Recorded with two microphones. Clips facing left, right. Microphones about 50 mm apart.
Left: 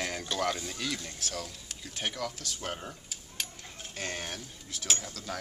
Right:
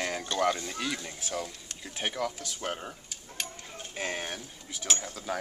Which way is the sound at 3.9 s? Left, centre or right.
Centre.